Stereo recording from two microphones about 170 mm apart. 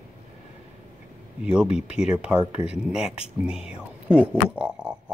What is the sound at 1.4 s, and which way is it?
Speech, 5° right (ahead or behind).